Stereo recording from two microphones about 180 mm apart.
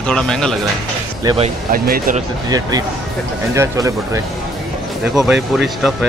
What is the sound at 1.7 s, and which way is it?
Speech, 50° right (ahead or behind).